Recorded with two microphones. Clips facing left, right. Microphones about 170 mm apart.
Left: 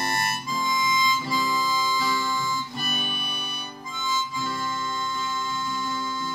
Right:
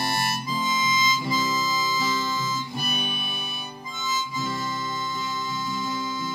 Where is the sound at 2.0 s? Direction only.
20° right (ahead or behind).